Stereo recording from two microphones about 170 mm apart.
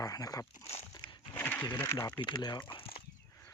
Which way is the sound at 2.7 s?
30° left (ahead or behind).